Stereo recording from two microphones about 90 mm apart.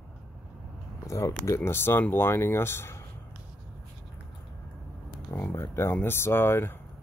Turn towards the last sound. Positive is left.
turn(degrees=25)  # may be behind; listen again after turning